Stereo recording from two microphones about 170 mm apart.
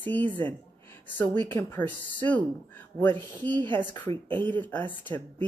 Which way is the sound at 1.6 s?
15° left (ahead or behind).